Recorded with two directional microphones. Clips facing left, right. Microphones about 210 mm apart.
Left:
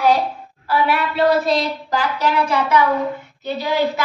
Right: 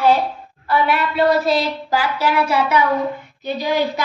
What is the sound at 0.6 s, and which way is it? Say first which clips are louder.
A woman's voice: right 1 dB; centre (ahead or behind).